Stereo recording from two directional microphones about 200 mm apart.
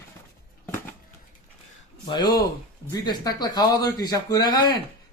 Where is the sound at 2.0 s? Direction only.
20° left (ahead or behind).